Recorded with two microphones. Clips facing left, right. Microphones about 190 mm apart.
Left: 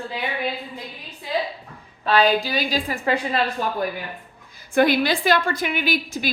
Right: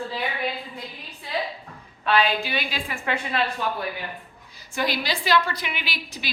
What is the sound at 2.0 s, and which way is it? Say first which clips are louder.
A woman's voice: left 4 dB; 40° left (ahead or behind).